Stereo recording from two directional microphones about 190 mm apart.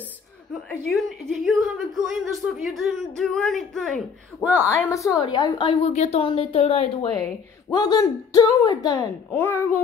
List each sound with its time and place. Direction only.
0.9 s speech: centre (ahead or behind)
4.7 s a woman's voice: 15° left (ahead or behind); by 7.1 s 30° left (ahead or behind)
7.7 s a woman's voice: 20° left (ahead or behind)